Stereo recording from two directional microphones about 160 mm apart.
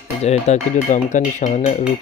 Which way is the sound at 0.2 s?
45° left (ahead or behind).